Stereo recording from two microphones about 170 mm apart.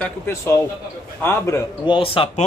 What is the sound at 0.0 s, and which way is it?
Speech, 15° left (ahead or behind).